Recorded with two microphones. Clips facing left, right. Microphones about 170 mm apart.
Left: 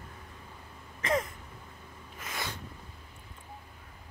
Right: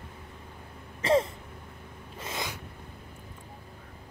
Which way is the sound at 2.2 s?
25° right (ahead or behind).